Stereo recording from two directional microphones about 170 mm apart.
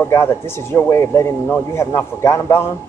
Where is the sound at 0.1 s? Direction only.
15° left (ahead or behind).